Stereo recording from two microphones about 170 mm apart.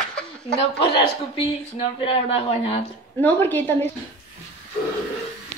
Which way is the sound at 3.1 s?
10° left (ahead or behind).